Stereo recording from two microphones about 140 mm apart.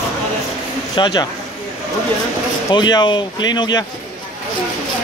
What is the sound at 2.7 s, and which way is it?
Speech, 30° left (ahead or behind).